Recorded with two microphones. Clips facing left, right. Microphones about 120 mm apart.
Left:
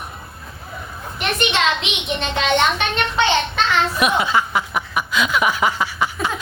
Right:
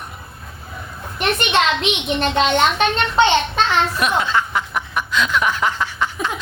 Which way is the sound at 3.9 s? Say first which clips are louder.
Left 1 dB; 10° left (ahead or behind).